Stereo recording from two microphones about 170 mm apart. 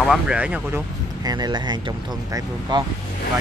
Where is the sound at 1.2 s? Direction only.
25° right (ahead or behind).